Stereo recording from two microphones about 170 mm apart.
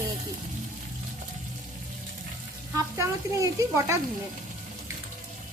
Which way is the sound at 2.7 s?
20° right (ahead or behind).